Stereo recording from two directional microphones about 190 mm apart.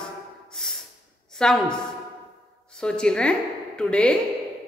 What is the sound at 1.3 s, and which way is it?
A woman's voice, 5° left (ahead or behind).